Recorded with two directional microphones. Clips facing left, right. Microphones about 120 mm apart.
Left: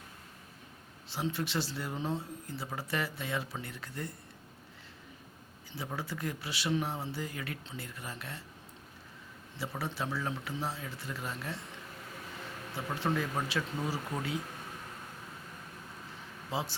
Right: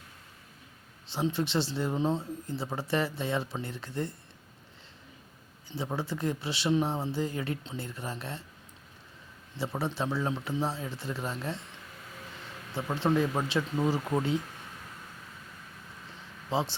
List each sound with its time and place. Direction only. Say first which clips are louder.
1.0 s speech: right 5 dB; 25° right (ahead or behind)
5.7 s speech: right 5 dB; 25° right (ahead or behind)
9.6 s speech: right 5 dB; 25° right (ahead or behind)
12.7 s speech: right 6 dB; 25° right (ahead or behind)
16.5 s speech: right 6 dB; 25° right (ahead or behind)